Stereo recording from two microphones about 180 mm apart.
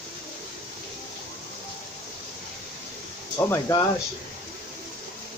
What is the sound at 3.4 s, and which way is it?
Speech, 20° left (ahead or behind).